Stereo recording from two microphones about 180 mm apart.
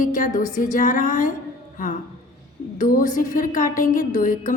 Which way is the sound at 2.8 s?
50° left (ahead or behind).